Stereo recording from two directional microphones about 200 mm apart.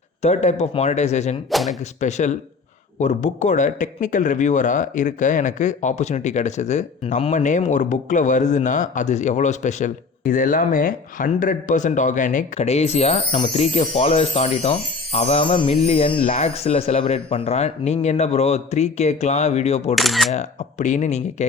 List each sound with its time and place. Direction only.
0.2 s a man's voice: 35° left (ahead or behind)
1.5 s speech: centre (ahead or behind)
2.0 s a man's voice: 35° left (ahead or behind)
20.0 s speech: centre (ahead or behind)
20.3 s a man's voice: 35° left (ahead or behind)